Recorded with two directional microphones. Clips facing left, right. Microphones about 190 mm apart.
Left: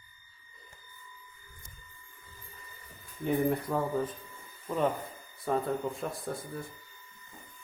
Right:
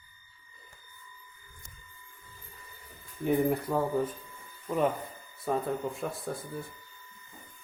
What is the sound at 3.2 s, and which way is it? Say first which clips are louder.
Speech: right 2 dB; 5° right (ahead or behind).